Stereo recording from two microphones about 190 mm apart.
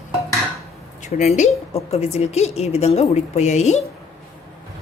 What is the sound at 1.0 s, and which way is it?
A woman's voice, 40° left (ahead or behind).